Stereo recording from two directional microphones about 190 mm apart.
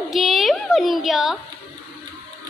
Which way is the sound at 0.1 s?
Centre (ahead or behind).